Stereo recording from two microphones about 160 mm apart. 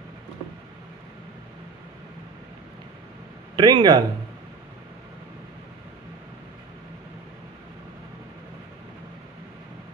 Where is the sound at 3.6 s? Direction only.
25° right (ahead or behind).